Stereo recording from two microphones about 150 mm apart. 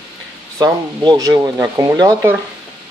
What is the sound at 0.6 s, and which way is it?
Speech, 25° right (ahead or behind).